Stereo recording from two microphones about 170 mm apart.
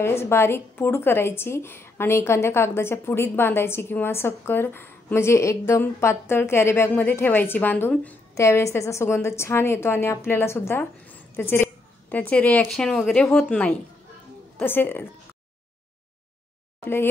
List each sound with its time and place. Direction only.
0.0 s a woman's voice: 15° left (ahead or behind)
16.8 s speech: 15° left (ahead or behind)